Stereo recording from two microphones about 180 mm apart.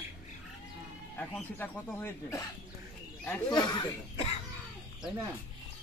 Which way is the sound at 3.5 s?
25° left (ahead or behind).